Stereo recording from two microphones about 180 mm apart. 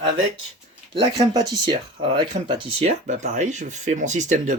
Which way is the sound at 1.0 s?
20° right (ahead or behind).